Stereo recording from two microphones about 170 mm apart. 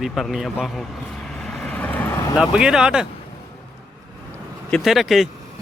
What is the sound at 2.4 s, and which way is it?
Speech, 5° right (ahead or behind).